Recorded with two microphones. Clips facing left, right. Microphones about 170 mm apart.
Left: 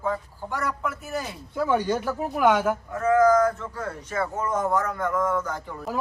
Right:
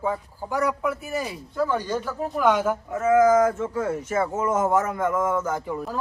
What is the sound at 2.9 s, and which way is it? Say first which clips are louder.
Speech: right 1 dB; 20° right (ahead or behind).